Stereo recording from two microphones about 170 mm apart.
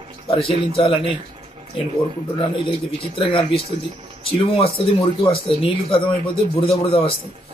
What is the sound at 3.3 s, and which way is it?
Speech, 30° left (ahead or behind).